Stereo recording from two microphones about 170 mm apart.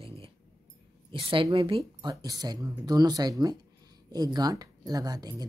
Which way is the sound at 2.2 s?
20° right (ahead or behind).